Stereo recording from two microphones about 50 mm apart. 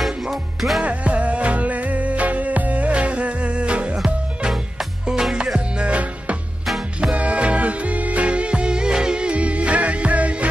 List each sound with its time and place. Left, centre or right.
0.0 s music: centre
0.8 s music: right